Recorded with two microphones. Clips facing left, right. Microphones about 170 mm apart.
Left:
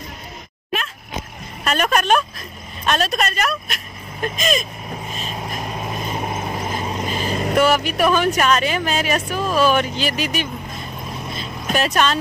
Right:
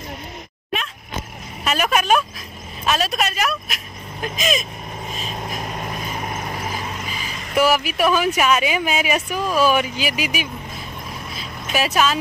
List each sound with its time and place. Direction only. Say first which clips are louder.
1.6 s speech: left 1 dB; 5° right (ahead or behind)
5.1 s vehicle: right 1 dB; centre (ahead or behind)
7.0 s vehicle: left 9 dB; 45° left (ahead or behind)
7.5 s a woman's voice: even; 5° right (ahead or behind)
11.7 s speech: left 1 dB; 5° right (ahead or behind)